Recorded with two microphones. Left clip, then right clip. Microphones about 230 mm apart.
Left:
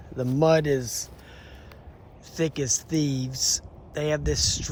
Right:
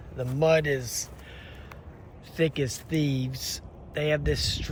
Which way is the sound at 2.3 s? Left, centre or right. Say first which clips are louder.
Left 1 dB; centre.